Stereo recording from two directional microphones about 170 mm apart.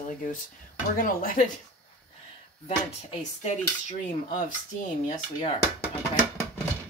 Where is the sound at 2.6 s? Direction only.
40° left (ahead or behind).